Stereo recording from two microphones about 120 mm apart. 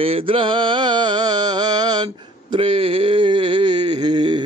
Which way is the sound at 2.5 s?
50° right (ahead or behind).